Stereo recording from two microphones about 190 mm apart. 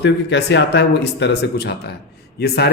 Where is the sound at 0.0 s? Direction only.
65° left (ahead or behind).